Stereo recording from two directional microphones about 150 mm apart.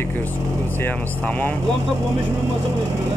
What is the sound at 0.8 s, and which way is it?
Speech, 10° left (ahead or behind).